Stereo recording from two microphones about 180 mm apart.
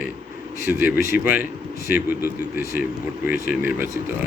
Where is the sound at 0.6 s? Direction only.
10° right (ahead or behind).